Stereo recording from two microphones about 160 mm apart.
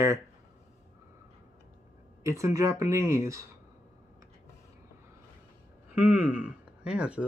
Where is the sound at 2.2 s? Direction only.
20° right (ahead or behind).